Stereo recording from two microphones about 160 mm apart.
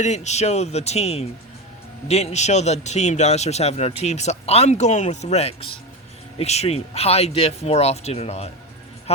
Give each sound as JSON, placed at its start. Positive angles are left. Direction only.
{"t": 0.0, "sound": "a man's voice", "side_deg": 45}